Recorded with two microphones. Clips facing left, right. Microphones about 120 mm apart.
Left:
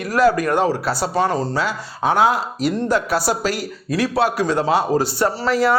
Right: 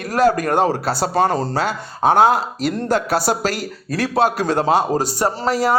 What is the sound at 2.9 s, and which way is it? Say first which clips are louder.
Speech: right 1 dB; 30° right (ahead or behind).